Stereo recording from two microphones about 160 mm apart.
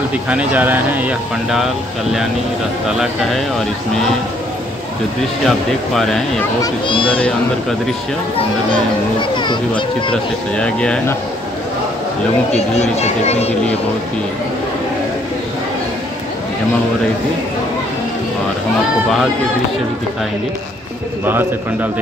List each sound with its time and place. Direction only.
0.1 s speech: 10° right (ahead or behind)
3.0 s speech: centre (ahead or behind)
5.9 s speech: centre (ahead or behind)
6.6 s a child's voice: 30° left (ahead or behind)
9.4 s speech: 30° left (ahead or behind)
10.5 s speech: 5° left (ahead or behind)
12.5 s speech: 45° left (ahead or behind)